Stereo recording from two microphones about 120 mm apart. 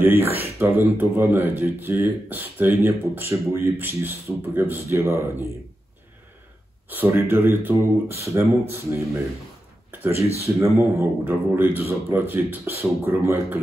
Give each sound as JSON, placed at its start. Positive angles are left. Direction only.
{"t": 0.0, "sound": "speech", "side_deg": -15}
{"t": 6.9, "sound": "speech", "side_deg": -15}
{"t": 10.4, "sound": "speech", "side_deg": -25}